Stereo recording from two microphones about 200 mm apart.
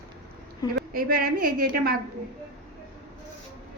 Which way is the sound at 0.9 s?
50° right (ahead or behind).